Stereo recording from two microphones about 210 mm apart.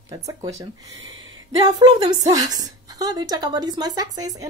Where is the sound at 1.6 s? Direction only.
15° right (ahead or behind).